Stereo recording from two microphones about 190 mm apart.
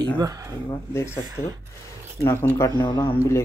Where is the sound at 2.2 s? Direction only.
15° left (ahead or behind).